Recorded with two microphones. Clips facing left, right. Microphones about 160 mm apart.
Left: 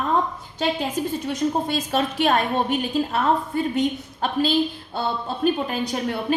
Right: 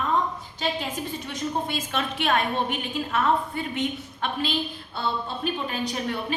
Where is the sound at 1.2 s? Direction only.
40° left (ahead or behind).